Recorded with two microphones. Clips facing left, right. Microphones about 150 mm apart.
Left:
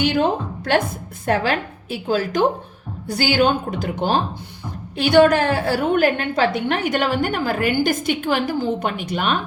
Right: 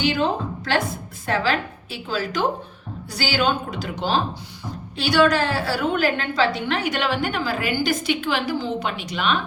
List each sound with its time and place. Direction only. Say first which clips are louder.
0.0 s a woman's voice: left 3 dB; 50° left (ahead or behind)